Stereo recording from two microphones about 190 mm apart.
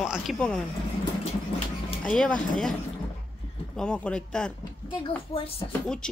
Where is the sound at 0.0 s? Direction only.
Centre (ahead or behind).